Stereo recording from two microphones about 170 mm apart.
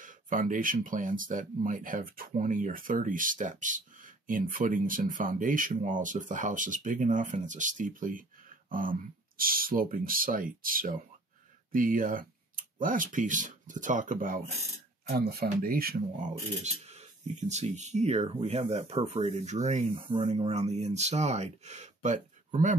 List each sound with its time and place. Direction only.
0.0 s speech: 50° right (ahead or behind)
15.0 s speech: 65° right (ahead or behind); by 22.8 s 45° right (ahead or behind)